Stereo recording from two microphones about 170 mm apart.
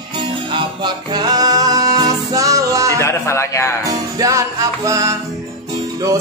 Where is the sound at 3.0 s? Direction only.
15° left (ahead or behind).